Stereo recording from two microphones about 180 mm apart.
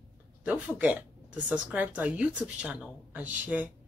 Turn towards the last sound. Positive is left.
turn(degrees=-10)  # may be behind; listen again after turning